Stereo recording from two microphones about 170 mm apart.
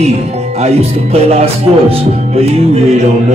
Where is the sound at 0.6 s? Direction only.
40° right (ahead or behind).